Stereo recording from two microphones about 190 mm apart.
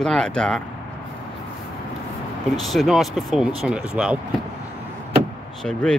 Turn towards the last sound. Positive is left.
turn(degrees=5)  # may be behind; listen again after turning